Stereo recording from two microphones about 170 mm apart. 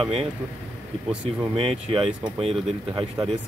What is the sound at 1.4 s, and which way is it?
Speech, 35° right (ahead or behind).